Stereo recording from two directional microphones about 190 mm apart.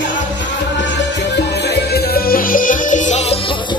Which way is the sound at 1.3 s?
60° left (ahead or behind).